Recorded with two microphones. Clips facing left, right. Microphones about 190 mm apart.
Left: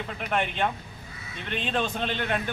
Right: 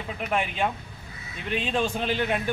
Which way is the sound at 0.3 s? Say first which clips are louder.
Even; 5° right (ahead or behind).